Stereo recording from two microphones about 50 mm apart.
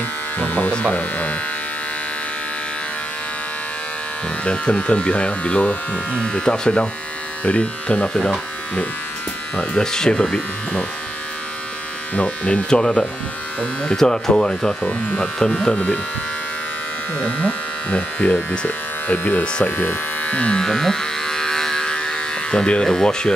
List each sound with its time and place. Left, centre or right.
0.4 s electric shaver: left
4.5 s speech: left
9.6 s speech: centre
12.2 s speech: left
15.5 s speech: left
17.2 s speech: left
19.0 s speech: left
20.2 s speech: left
20.6 s electric shaver: centre